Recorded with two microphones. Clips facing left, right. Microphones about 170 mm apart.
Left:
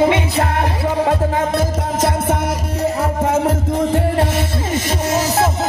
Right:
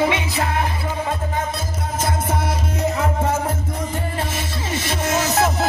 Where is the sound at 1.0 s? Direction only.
70° left (ahead or behind).